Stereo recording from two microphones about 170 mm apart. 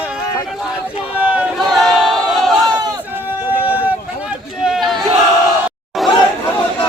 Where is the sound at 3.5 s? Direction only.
10° right (ahead or behind).